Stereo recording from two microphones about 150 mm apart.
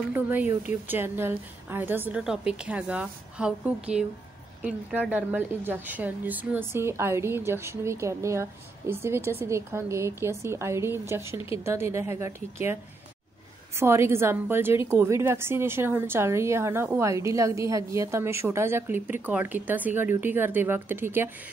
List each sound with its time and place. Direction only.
0.1 s a woman's voice: 15° right (ahead or behind)
5.1 s a woman's voice: 15° right (ahead or behind)
11.3 s speech: 35° left (ahead or behind)
11.6 s a woman's voice: 15° right (ahead or behind)
13.7 s a woman's voice: 15° right (ahead or behind)